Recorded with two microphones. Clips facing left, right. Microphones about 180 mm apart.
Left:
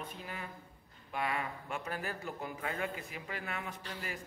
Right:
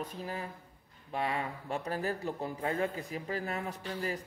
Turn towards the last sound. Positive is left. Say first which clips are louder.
# right 5 dB
turn(degrees=-35)  # may be behind; listen again after turning